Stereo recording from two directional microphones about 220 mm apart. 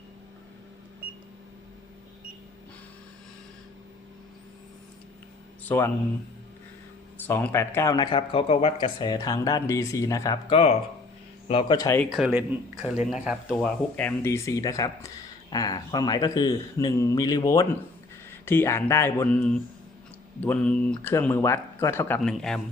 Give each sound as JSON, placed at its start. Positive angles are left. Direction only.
{"t": 5.6, "sound": "speech", "side_deg": 10}
{"t": 7.3, "sound": "speech", "side_deg": 10}
{"t": 10.5, "sound": "speech", "side_deg": 25}
{"t": 12.0, "sound": "speech", "side_deg": 0}